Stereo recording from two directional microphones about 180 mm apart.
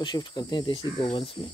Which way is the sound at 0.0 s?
25° left (ahead or behind).